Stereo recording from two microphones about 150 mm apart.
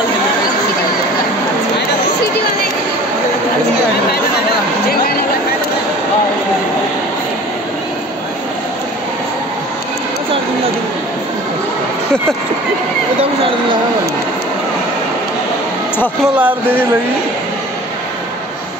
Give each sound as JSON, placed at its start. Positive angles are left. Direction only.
{"t": 16.3, "sound": "speech", "side_deg": -10}